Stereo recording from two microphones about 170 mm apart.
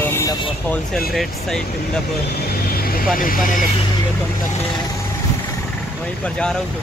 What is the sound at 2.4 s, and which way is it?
Vehicle, 65° left (ahead or behind).